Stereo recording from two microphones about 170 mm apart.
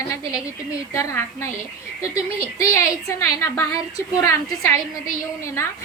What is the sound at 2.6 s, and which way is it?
A woman's voice, 20° left (ahead or behind).